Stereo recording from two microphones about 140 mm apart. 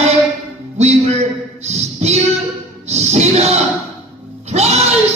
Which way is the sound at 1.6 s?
50° right (ahead or behind).